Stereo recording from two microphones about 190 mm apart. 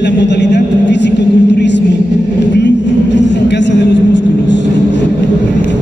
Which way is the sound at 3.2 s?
65° left (ahead or behind).